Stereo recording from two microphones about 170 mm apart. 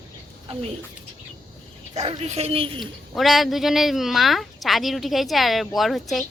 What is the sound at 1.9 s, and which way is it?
Speech, 40° right (ahead or behind).